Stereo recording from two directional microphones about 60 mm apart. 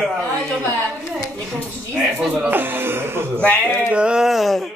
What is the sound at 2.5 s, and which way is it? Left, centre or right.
Speech, right.